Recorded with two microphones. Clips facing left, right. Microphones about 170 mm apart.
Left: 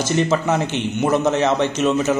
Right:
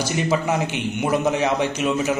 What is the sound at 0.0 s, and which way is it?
Speech, 10° right (ahead or behind).